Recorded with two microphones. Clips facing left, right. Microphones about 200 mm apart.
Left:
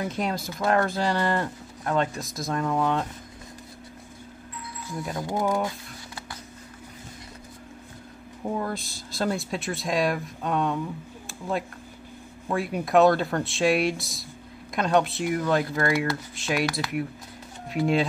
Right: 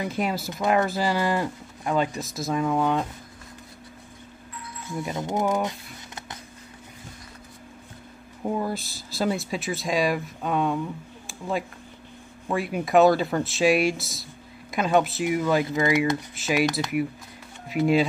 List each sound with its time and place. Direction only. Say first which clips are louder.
0.0 s speech: right 1 dB; 5° right (ahead or behind)
5.1 s speech: right 1 dB; 20° right (ahead or behind)
8.5 s speech: right 2 dB; 5° right (ahead or behind)
11.2 s a sound: right 1 dB; centre (ahead or behind)
12.4 s speech: right 1 dB; centre (ahead or behind)